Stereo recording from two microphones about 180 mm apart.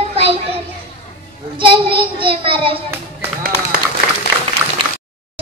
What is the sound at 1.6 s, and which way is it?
Child singing, 30° right (ahead or behind).